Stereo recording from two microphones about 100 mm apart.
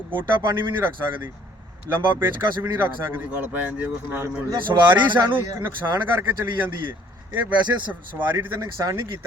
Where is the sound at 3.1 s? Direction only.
20° right (ahead or behind).